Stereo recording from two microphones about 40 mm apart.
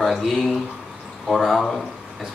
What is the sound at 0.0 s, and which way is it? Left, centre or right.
Speech, centre.